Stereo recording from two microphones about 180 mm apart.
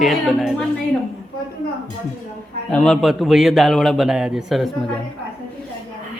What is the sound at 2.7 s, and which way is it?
A man's voice, 5° left (ahead or behind).